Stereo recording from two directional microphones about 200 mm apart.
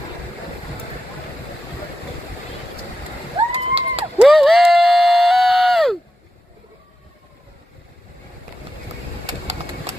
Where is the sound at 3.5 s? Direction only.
25° right (ahead or behind).